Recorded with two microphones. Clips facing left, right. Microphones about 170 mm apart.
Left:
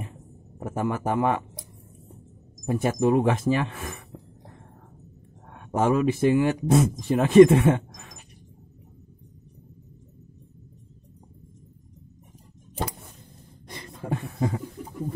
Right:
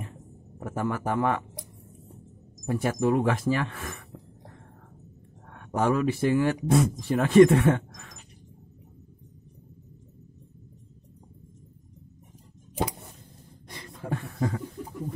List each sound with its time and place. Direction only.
0.6 s speech: 20° left (ahead or behind)
2.6 s speech: 20° left (ahead or behind)
5.5 s speech: 20° left (ahead or behind)
14.0 s beatboxing: 20° left (ahead or behind)